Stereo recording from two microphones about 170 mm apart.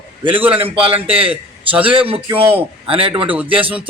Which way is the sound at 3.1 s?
10° right (ahead or behind).